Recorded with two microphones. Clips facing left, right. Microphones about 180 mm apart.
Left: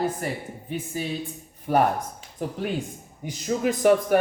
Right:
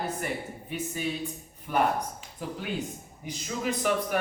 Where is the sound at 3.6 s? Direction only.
50° left (ahead or behind).